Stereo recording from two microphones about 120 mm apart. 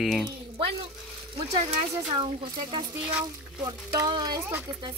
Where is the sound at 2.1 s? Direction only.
45° right (ahead or behind).